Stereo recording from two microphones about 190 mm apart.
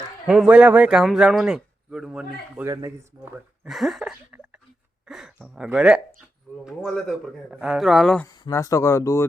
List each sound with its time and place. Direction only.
0.3 s speech: 5° right (ahead or behind)
3.6 s a sound: centre (ahead or behind)
5.0 s speech: centre (ahead or behind)
8.3 s speech: 15° left (ahead or behind)